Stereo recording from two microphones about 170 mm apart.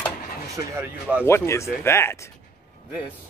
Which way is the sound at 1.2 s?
15° left (ahead or behind).